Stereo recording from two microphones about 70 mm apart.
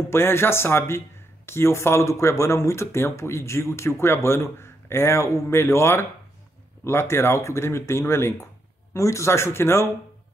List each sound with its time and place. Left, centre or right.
0.1 s speech: left